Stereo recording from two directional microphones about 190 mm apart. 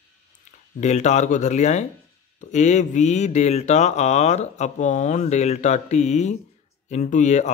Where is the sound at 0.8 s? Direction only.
40° left (ahead or behind).